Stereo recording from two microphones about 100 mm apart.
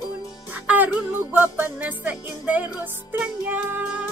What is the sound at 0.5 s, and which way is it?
Music, 15° right (ahead or behind).